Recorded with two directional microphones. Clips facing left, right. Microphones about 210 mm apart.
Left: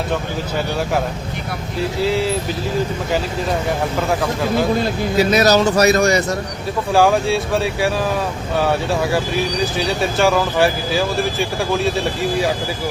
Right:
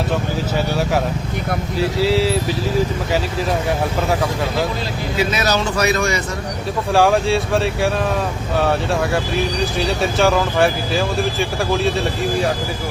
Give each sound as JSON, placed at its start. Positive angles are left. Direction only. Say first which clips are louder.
{"t": 1.8, "sound": "speech", "louder": "right 1 dB", "side_deg": 0}
{"t": 4.8, "sound": "speech", "louder": "left 4 dB", "side_deg": 40}
{"t": 6.9, "sound": "speech", "louder": "even", "side_deg": 0}